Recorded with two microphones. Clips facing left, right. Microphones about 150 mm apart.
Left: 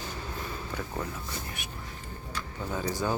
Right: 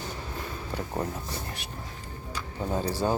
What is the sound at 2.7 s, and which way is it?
Speech, 35° right (ahead or behind).